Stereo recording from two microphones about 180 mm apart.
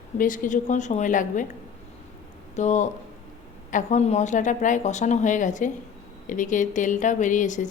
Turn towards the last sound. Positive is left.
turn(degrees=45)  # may be behind; listen again after turning